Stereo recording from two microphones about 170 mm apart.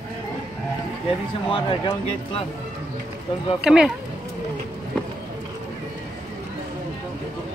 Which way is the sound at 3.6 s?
5° right (ahead or behind).